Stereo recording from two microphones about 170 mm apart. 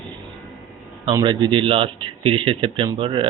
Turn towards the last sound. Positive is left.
turn(degrees=-30)  # may be behind; listen again after turning